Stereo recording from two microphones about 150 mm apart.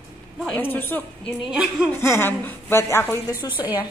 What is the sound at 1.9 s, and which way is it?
A woman's voice, 15° left (ahead or behind).